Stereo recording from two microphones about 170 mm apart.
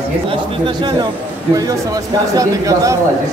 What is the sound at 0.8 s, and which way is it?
A man's voice, 25° right (ahead or behind).